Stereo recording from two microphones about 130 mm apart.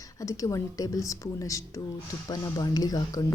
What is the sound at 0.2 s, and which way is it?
Speech, 25° left (ahead or behind).